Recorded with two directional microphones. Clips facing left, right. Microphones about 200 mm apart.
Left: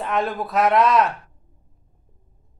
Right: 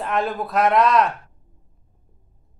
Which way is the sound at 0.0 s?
Centre (ahead or behind).